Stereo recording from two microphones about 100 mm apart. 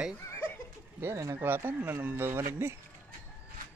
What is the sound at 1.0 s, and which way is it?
Speech, 30° right (ahead or behind).